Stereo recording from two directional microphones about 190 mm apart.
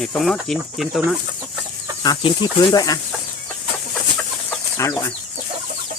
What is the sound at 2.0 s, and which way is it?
Speech, 25° left (ahead or behind).